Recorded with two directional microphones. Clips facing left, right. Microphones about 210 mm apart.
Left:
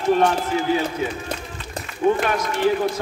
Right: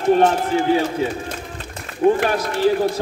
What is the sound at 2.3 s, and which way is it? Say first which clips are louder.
Speech: right 2 dB; 35° right (ahead or behind).